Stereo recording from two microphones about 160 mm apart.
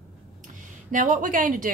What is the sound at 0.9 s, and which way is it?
Speech, 55° right (ahead or behind).